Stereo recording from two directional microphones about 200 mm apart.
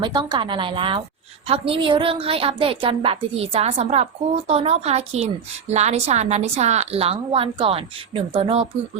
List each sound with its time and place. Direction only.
0.0 s a woman's voice: 20° right (ahead or behind)